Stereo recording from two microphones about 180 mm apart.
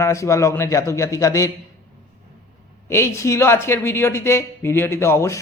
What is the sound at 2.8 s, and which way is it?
Speech, 15° left (ahead or behind).